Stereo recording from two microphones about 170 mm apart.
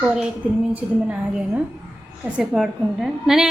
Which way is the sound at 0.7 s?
10° right (ahead or behind).